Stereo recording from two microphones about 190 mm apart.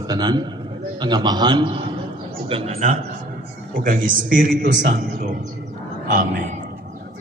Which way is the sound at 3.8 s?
45° right (ahead or behind).